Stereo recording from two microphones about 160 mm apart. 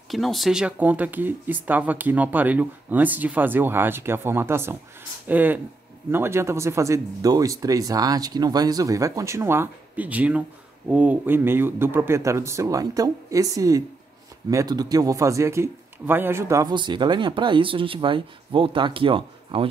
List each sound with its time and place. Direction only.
0.1 s speech: centre (ahead or behind); by 19.7 s 35° right (ahead or behind)